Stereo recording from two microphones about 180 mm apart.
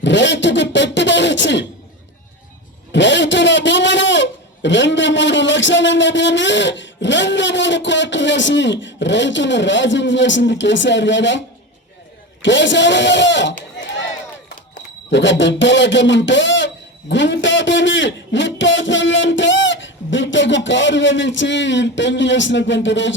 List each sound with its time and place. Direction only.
0.0 s a sound: 85° left
2.9 s a man's voice: 85° left
15.1 s a man's voice: 90° left